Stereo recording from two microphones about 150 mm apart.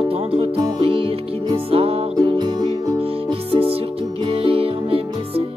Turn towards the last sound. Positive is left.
turn(degrees=-40)  # may be behind; listen again after turning